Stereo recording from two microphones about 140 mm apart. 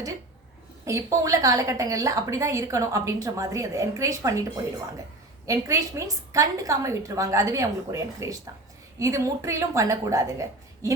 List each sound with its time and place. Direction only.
0.9 s a woman's voice: 20° right (ahead or behind)
5.5 s a woman's voice: 20° right (ahead or behind)